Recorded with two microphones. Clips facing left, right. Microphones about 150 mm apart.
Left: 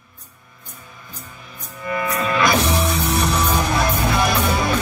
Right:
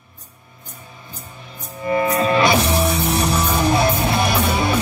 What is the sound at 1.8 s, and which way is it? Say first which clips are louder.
Music: right 5 dB; 30° right (ahead or behind).